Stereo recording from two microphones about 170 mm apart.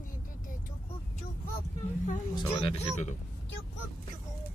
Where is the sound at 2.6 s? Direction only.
40° left (ahead or behind).